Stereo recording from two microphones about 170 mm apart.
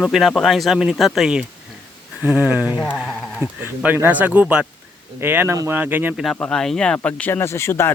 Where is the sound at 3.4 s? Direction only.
10° right (ahead or behind).